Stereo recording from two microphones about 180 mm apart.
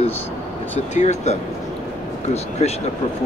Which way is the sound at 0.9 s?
40° left (ahead or behind).